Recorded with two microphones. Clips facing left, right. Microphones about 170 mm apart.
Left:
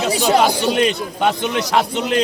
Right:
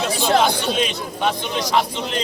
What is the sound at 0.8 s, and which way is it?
A man's voice, 65° left (ahead or behind).